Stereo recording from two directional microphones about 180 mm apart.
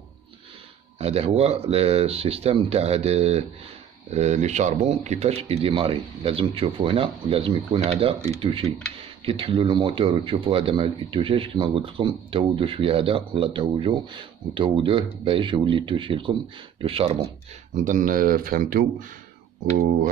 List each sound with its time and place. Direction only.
0.9 s speech: 35° right (ahead or behind)
17.7 s speech: 45° right (ahead or behind)